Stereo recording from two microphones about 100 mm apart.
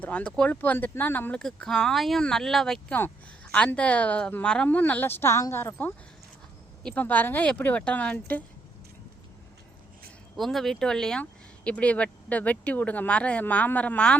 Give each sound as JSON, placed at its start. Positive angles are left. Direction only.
{"t": 0.0, "sound": "speech", "side_deg": 15}
{"t": 1.4, "sound": "speech", "side_deg": 5}
{"t": 6.8, "sound": "speech", "side_deg": 15}
{"t": 10.3, "sound": "speech", "side_deg": 0}